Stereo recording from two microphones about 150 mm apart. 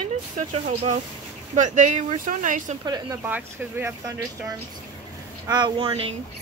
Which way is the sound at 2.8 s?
25° right (ahead or behind).